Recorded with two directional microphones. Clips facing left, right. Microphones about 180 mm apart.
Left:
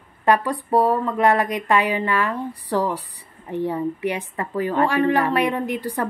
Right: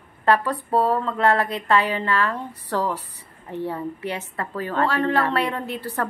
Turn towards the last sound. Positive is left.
turn(degrees=15)  # may be behind; listen again after turning